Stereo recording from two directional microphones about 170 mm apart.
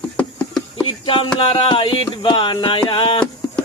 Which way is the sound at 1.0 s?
30° left (ahead or behind).